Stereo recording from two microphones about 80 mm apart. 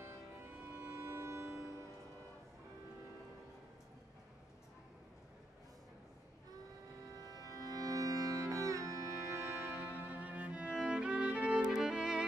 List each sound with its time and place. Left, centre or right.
0.0 s music: right
7.2 s music: right
9.9 s music: right